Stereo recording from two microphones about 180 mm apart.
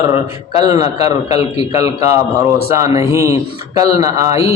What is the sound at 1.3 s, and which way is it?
Speech, 35° left (ahead or behind).